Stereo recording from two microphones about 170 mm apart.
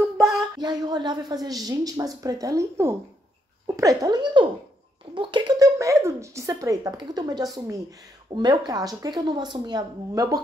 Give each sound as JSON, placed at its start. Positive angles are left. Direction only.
{"t": 0.6, "sound": "speech", "side_deg": -25}